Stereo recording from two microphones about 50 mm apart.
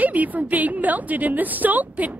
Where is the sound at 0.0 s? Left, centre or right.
Right.